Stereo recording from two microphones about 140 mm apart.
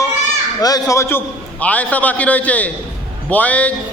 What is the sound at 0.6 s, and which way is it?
A man's voice, 25° left (ahead or behind).